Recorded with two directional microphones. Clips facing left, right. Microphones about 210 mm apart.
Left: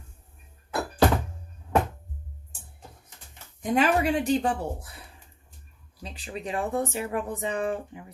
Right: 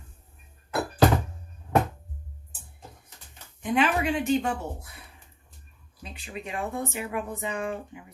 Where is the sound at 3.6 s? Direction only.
40° left (ahead or behind).